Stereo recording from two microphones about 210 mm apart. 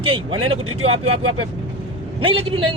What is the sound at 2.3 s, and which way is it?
Speech, 25° right (ahead or behind).